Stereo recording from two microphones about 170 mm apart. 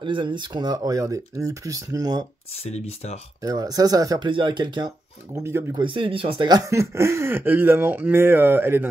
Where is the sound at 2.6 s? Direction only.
40° left (ahead or behind).